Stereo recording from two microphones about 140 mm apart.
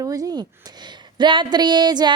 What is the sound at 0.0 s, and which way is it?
A woman's voice, 25° right (ahead or behind).